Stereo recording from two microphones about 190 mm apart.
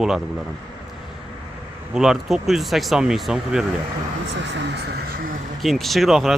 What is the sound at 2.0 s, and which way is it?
Speech, centre (ahead or behind).